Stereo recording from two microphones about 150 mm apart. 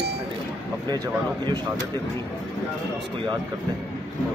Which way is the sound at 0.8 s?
25° right (ahead or behind).